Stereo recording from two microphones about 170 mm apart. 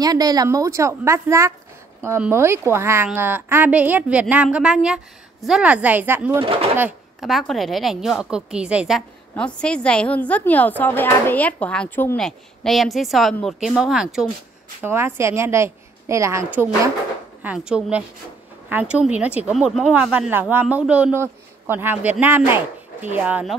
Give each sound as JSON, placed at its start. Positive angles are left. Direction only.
{"t": 0.0, "sound": "speech", "side_deg": -20}
{"t": 6.4, "sound": "speech", "side_deg": -35}
{"t": 7.2, "sound": "a woman's voice", "side_deg": 0}
{"t": 9.3, "sound": "a woman's voice", "side_deg": 5}
{"t": 14.8, "sound": "speech", "side_deg": -15}
{"t": 23.1, "sound": "speech", "side_deg": -10}